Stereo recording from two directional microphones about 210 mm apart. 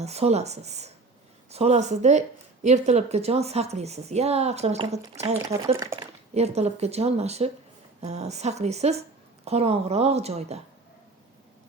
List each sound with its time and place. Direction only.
0.0 s a woman's voice: 30° right (ahead or behind)